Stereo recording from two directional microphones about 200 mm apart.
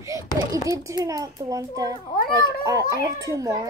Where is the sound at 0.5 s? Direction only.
15° right (ahead or behind).